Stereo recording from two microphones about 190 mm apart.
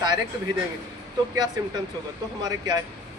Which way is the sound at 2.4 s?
20° right (ahead or behind).